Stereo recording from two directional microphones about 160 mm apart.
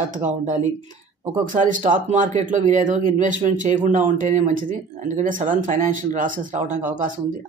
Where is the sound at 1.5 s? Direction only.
55° right (ahead or behind).